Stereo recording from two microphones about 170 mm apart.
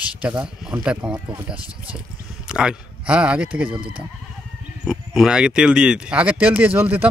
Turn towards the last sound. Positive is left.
turn(degrees=-10)  # may be behind; listen again after turning